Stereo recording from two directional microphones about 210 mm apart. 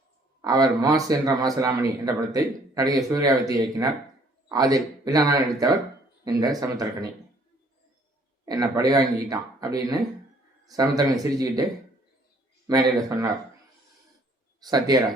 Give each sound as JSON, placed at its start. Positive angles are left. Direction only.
{"t": 0.4, "sound": "speech", "side_deg": -15}
{"t": 8.4, "sound": "speech", "side_deg": -20}
{"t": 12.6, "sound": "speech", "side_deg": -15}
{"t": 14.6, "sound": "speech", "side_deg": -20}